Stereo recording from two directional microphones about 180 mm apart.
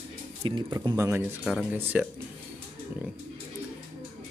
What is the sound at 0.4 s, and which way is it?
Speech, 25° right (ahead or behind).